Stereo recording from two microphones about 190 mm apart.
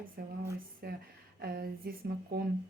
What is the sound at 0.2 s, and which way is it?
Speech, 55° right (ahead or behind).